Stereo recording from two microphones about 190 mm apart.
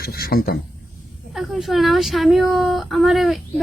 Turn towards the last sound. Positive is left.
turn(degrees=0)  # may be behind; listen again after turning